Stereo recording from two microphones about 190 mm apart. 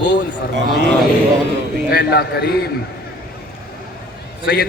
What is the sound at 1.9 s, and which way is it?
Speech, 60° left (ahead or behind).